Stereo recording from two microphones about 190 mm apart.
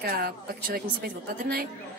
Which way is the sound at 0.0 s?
50° right (ahead or behind).